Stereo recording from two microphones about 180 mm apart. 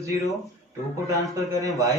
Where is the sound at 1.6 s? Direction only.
20° right (ahead or behind).